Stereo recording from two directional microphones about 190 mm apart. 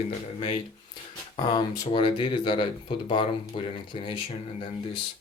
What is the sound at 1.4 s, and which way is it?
Speech, 20° left (ahead or behind).